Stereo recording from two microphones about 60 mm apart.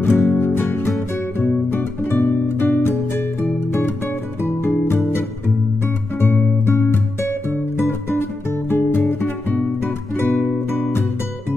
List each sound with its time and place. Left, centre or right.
0.0 s music: left